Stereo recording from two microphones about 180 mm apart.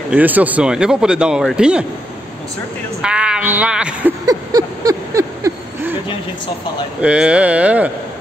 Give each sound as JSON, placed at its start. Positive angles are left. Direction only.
{"t": 0.1, "sound": "a man's voice", "side_deg": -10}
{"t": 3.0, "sound": "a man's voice", "side_deg": -5}
{"t": 4.3, "sound": "a sound", "side_deg": -20}
{"t": 7.0, "sound": "speech", "side_deg": -5}